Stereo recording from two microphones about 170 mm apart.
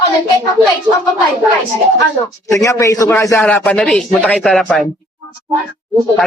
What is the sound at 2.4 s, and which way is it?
A man's voice, 20° left (ahead or behind).